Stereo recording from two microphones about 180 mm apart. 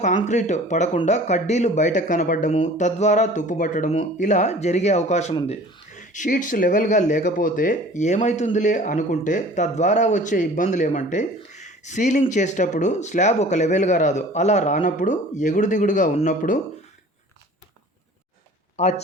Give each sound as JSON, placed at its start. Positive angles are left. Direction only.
{"t": 0.3, "sound": "speech", "side_deg": 40}
{"t": 5.3, "sound": "speech", "side_deg": 25}
{"t": 5.9, "sound": "speech", "side_deg": 45}
{"t": 18.8, "sound": "speech", "side_deg": 40}